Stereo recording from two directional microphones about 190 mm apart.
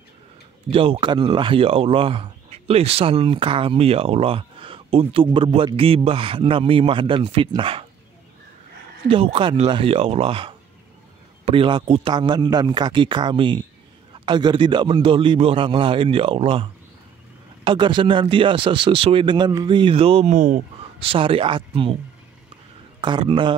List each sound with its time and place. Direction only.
0.7 s speech: 30° right (ahead or behind)
9.0 s speech: 30° right (ahead or behind)
17.6 s speech: 25° right (ahead or behind)
22.9 s a man's voice: 25° right (ahead or behind)